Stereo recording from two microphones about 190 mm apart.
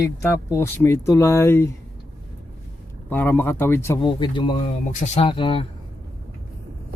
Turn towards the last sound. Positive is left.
turn(degrees=30)  # may be behind; listen again after turning